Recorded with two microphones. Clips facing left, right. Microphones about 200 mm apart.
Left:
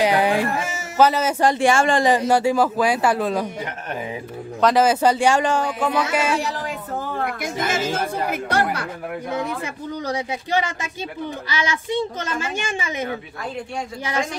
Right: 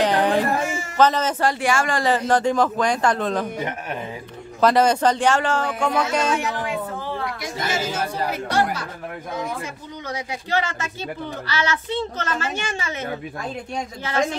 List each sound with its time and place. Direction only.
0.0 s a sound: 10° left (ahead or behind)
1.5 s a woman's voice: 25° left (ahead or behind)
2.0 s a woman's voice: 10° left (ahead or behind)
4.6 s a woman's voice: centre (ahead or behind)
5.8 s music: 5° left (ahead or behind)
7.2 s speech: 50° left (ahead or behind)
10.5 s a woman's voice: 15° left (ahead or behind)